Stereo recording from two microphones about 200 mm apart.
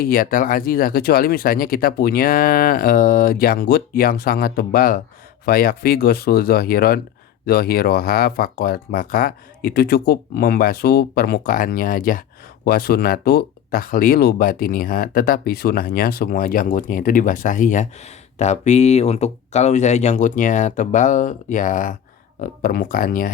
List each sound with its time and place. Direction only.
0.0 s speech: 45° left (ahead or behind)